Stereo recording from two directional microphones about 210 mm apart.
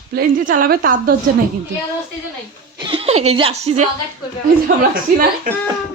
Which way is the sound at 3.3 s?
30° right (ahead or behind).